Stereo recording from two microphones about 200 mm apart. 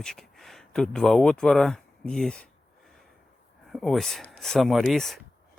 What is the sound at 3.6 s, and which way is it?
Speech, centre (ahead or behind).